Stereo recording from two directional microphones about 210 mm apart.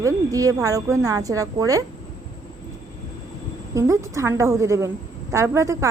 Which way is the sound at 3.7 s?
15° right (ahead or behind).